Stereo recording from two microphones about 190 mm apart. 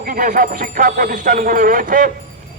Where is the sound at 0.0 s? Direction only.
45° right (ahead or behind).